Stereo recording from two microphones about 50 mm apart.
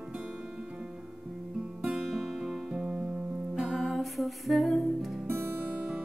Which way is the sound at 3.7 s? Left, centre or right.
Centre.